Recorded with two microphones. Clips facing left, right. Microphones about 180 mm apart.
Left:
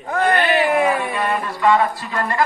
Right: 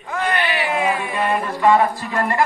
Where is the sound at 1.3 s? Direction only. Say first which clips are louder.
Right 2 dB; 20° right (ahead or behind).